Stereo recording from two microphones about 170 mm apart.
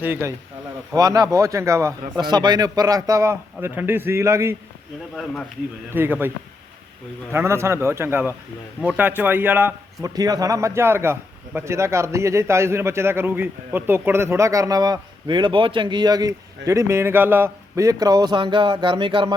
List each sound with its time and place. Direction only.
0.0 s a man's voice: 15° right (ahead or behind)
5.9 s a man's voice: 10° right (ahead or behind); by 19.3 s 30° right (ahead or behind)